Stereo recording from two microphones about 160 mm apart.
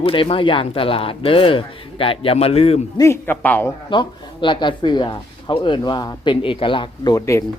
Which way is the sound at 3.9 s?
30° left (ahead or behind).